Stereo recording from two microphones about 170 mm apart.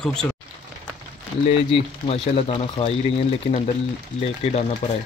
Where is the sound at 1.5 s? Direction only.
35° left (ahead or behind).